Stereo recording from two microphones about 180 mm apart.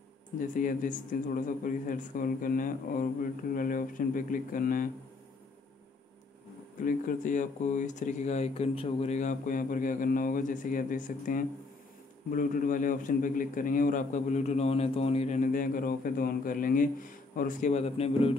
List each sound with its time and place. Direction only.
0.4 s a man's voice: 45° left (ahead or behind)
6.8 s a man's voice: 50° left (ahead or behind); by 18.3 s 35° left (ahead or behind)